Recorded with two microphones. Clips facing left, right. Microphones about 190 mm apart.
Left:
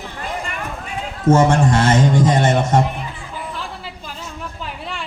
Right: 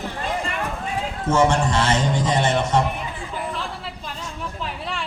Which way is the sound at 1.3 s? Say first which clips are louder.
Left 5 dB; 45° left (ahead or behind).